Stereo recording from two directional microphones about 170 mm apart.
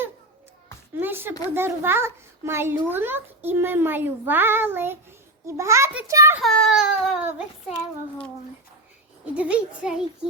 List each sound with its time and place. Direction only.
0.9 s a sound: 10° right (ahead or behind)
1.5 s a child's voice: 15° right (ahead or behind)
6.4 s babbling: centre (ahead or behind)
9.3 s a child's voice: 5° right (ahead or behind)